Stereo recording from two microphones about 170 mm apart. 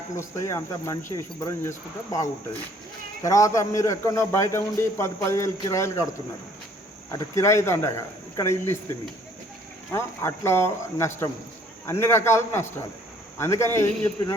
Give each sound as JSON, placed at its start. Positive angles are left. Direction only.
{"t": 0.2, "sound": "a man's voice", "side_deg": 20}
{"t": 7.1, "sound": "a man's voice", "side_deg": 20}
{"t": 9.9, "sound": "a man's voice", "side_deg": 15}